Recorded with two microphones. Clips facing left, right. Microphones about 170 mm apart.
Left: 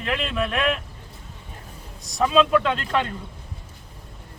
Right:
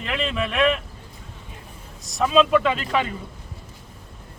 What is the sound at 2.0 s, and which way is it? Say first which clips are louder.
Speech: right 1 dB; centre (ahead or behind).